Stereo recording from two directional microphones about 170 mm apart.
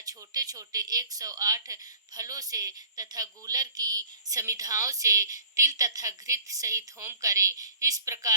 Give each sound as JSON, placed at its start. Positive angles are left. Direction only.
{"t": 0.0, "sound": "speech", "side_deg": -20}